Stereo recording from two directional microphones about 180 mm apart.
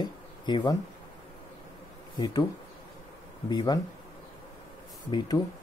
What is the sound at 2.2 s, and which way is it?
Speech, 25° left (ahead or behind).